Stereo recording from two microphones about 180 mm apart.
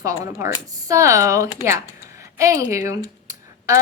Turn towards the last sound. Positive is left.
turn(degrees=-15)  # may be behind; listen again after turning